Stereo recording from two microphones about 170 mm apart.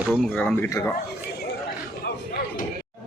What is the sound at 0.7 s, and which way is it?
Speech, 20° left (ahead or behind).